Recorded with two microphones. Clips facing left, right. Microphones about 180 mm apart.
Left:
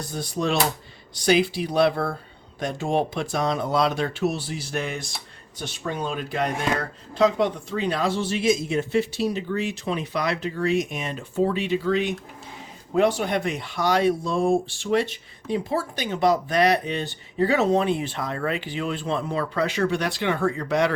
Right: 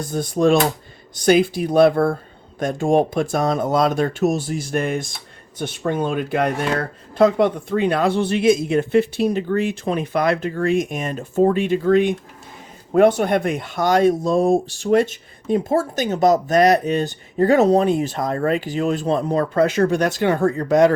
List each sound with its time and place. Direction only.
0.0 s speech: 50° right (ahead or behind)